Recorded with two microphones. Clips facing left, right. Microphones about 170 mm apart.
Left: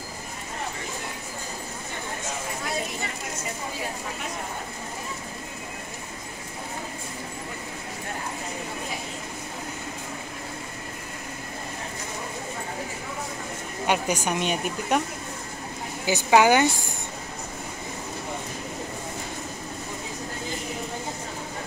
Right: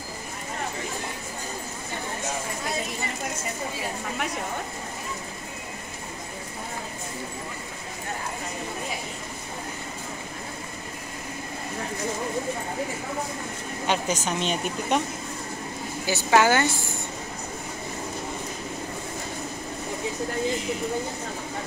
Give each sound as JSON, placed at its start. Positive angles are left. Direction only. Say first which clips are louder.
{"t": 13.8, "sound": "speech", "louder": "left 1 dB", "side_deg": 10}
{"t": 16.1, "sound": "speech", "louder": "left 2 dB", "side_deg": 15}